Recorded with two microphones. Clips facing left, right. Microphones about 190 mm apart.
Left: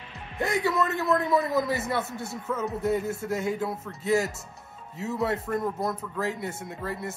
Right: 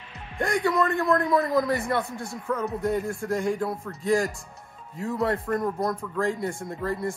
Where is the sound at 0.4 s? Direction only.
5° left (ahead or behind).